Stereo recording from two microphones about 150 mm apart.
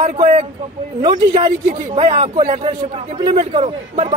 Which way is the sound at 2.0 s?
45° right (ahead or behind).